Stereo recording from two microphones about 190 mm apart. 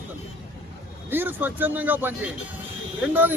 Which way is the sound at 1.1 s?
10° right (ahead or behind).